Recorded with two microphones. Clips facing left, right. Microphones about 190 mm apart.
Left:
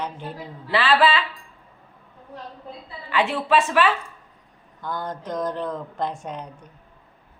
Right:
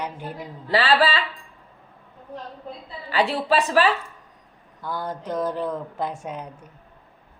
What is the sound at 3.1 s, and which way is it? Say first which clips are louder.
Speech: even; 35° right (ahead or behind).